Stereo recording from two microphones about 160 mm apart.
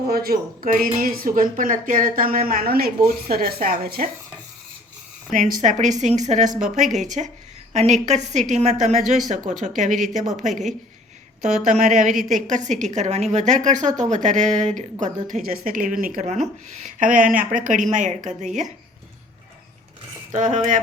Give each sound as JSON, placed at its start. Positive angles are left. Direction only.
{"t": 0.1, "sound": "speech", "side_deg": -70}
{"t": 5.3, "sound": "a woman's voice", "side_deg": -55}
{"t": 20.3, "sound": "a woman's voice", "side_deg": -50}